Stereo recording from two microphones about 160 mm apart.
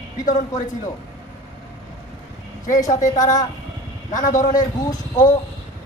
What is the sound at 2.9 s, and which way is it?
A man's voice, 50° left (ahead or behind).